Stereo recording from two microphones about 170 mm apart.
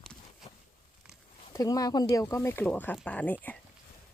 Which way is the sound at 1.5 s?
20° left (ahead or behind).